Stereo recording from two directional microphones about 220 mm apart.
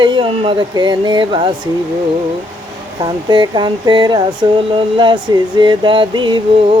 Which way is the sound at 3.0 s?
20° right (ahead or behind).